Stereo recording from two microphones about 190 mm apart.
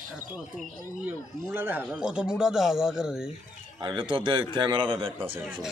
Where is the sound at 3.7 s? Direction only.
25° right (ahead or behind).